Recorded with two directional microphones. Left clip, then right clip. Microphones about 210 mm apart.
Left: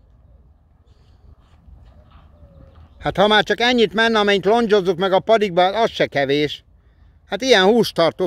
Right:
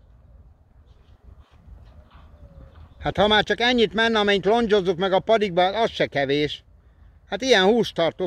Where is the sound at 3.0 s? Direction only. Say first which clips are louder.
Left 4 dB; 30° left (ahead or behind).